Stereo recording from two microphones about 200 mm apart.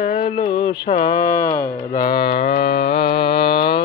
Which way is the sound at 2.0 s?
50° left (ahead or behind).